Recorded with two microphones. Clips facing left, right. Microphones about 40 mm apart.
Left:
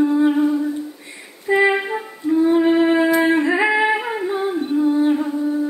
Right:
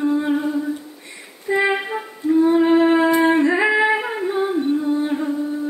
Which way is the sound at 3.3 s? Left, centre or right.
Centre.